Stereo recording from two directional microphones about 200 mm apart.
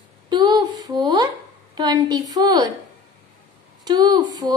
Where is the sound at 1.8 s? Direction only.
20° right (ahead or behind).